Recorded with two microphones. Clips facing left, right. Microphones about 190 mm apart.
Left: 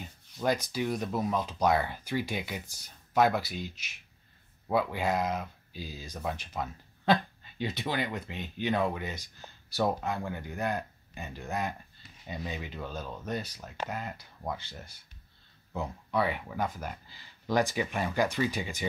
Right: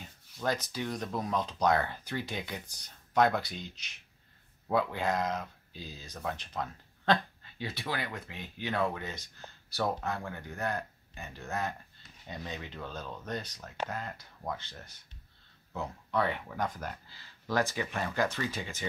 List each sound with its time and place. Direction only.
0.4 s speech: 10° left (ahead or behind)
7.5 s speech: 20° left (ahead or behind)